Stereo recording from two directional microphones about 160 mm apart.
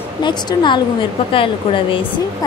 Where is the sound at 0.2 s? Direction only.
25° left (ahead or behind).